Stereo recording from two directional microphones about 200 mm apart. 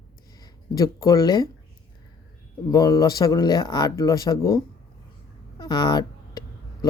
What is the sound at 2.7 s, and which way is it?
Speech, 20° left (ahead or behind).